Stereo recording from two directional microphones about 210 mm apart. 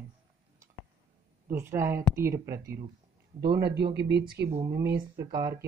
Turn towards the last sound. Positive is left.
turn(degrees=-20)  # may be behind; listen again after turning